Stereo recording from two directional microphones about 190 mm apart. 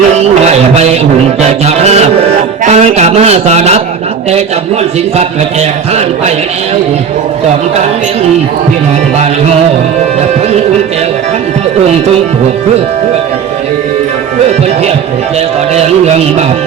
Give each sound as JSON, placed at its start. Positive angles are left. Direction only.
{"t": 0.2, "sound": "music", "side_deg": -35}
{"t": 2.6, "sound": "a sound", "side_deg": -35}
{"t": 5.1, "sound": "speech", "side_deg": -35}